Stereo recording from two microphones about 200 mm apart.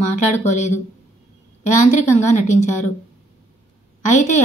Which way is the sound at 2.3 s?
35° left (ahead or behind).